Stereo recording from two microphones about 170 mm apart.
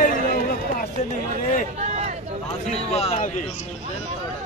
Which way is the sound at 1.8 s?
45° right (ahead or behind).